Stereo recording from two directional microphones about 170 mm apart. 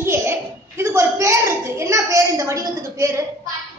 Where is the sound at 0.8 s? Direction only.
15° right (ahead or behind).